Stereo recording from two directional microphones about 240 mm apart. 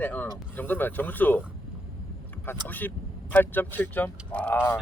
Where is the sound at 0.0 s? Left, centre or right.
Centre.